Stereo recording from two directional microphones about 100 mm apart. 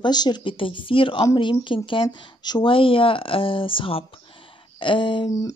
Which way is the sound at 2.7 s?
60° left (ahead or behind).